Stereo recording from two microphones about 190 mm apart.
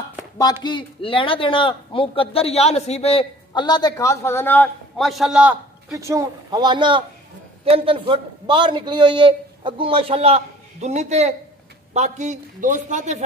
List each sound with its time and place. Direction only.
0.7 s a man's voice: 25° left (ahead or behind); by 13.2 s 40° right (ahead or behind)